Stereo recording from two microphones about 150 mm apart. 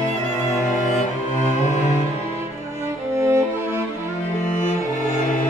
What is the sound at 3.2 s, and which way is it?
Music, 20° right (ahead or behind).